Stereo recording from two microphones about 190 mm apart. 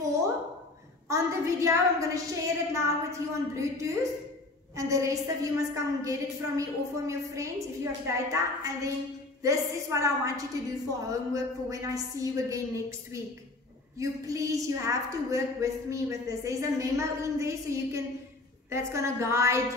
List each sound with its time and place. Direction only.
1.0 s a woman's voice: 15° right (ahead or behind)